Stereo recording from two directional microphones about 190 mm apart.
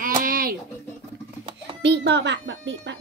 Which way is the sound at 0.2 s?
50° right (ahead or behind).